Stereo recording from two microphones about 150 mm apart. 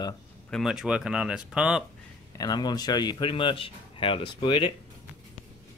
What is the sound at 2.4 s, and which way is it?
Speech, 30° left (ahead or behind).